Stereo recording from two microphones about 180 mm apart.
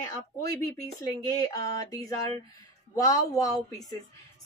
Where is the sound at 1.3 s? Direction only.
20° left (ahead or behind).